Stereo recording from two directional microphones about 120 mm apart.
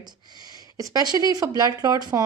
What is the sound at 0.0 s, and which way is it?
A woman's voice, 35° right (ahead or behind).